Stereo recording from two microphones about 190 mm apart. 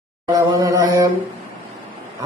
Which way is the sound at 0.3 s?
20° right (ahead or behind).